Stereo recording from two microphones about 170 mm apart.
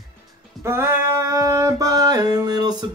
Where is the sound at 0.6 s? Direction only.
15° right (ahead or behind).